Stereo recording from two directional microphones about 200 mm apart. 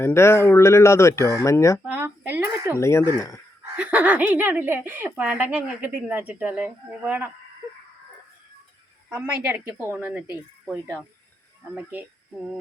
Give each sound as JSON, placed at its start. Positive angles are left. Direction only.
{"t": 0.0, "sound": "speech", "side_deg": 15}
{"t": 1.9, "sound": "a sound", "side_deg": -10}
{"t": 2.7, "sound": "speech", "side_deg": 15}
{"t": 3.8, "sound": "speech", "side_deg": -10}
{"t": 9.0, "sound": "speech", "side_deg": -5}